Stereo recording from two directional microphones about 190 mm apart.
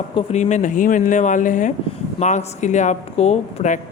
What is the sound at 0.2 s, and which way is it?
Speech, 35° left (ahead or behind).